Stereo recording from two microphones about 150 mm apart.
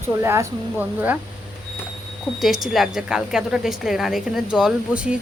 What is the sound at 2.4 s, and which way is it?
A woman's voice, centre (ahead or behind).